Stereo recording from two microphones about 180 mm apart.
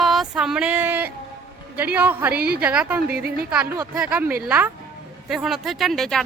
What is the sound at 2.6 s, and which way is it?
A woman's voice, 5° right (ahead or behind).